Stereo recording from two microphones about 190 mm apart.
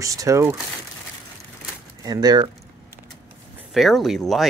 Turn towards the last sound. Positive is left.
turn(degrees=0)  # may be behind; listen again after turning